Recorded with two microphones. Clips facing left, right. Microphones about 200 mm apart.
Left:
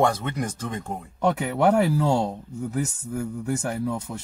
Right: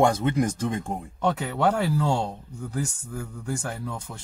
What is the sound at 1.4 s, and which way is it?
Speech, 20° left (ahead or behind).